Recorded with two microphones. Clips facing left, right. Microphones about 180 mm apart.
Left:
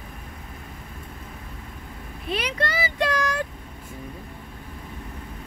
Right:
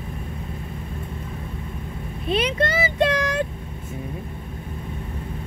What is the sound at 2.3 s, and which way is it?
Vehicle, 25° right (ahead or behind).